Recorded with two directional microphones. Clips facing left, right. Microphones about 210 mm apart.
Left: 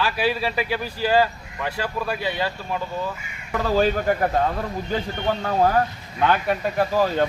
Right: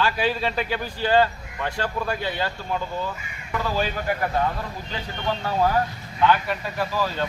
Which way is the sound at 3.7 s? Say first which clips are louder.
Left 7 dB; 55° left (ahead or behind).